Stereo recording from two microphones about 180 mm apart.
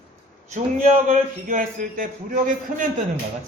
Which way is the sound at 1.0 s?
50° right (ahead or behind).